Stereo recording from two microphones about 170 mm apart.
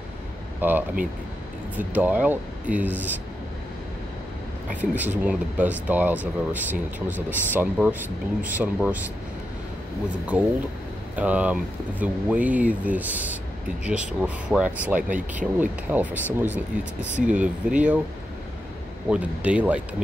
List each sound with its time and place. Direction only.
0.6 s speech: 10° right (ahead or behind)
4.9 s speech: 10° right (ahead or behind)
10.3 s speech: 10° right (ahead or behind)
15.0 s speech: 50° right (ahead or behind)
15.3 s speech: 10° right (ahead or behind)
19.0 s speech: 10° right (ahead or behind)